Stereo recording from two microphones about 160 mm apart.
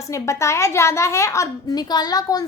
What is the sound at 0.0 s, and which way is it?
A woman's voice, 20° left (ahead or behind).